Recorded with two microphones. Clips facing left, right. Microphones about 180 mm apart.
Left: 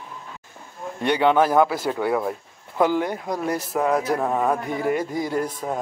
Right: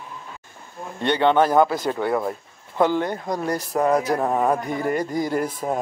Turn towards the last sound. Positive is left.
turn(degrees=0)  # may be behind; listen again after turning